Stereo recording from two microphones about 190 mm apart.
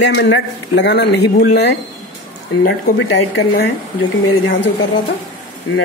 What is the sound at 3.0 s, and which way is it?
Speech, 70° left (ahead or behind).